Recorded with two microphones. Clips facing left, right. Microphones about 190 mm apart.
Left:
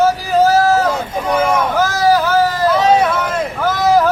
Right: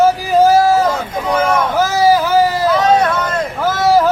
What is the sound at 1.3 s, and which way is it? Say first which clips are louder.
Vehicle: even; 10° left (ahead or behind).